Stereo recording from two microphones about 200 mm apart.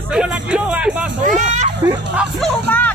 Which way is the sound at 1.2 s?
40° right (ahead or behind).